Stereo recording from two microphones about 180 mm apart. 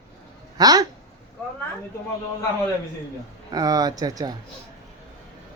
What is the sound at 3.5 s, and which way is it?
Speech, 20° right (ahead or behind).